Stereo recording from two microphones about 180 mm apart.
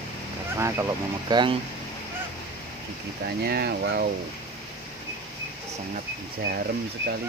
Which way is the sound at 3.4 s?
60° right (ahead or behind).